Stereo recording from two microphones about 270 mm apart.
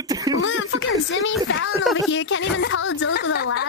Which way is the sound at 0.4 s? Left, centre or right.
Left.